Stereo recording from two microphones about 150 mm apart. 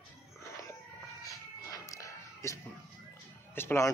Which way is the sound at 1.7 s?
20° left (ahead or behind).